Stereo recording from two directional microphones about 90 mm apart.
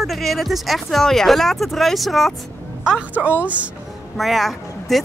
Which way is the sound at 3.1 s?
15° right (ahead or behind).